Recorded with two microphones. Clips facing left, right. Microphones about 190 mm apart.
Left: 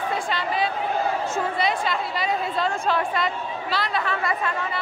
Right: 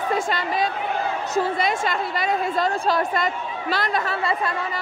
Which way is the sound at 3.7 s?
50° right (ahead or behind).